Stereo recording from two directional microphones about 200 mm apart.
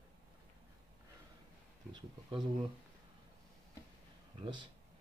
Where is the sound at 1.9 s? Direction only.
20° right (ahead or behind).